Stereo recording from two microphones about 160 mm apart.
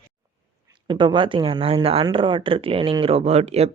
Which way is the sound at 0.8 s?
30° right (ahead or behind).